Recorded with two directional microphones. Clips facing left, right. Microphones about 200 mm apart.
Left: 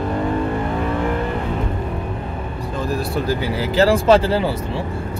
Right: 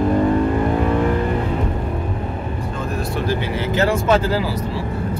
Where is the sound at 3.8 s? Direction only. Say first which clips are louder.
Left 4 dB; 30° left (ahead or behind).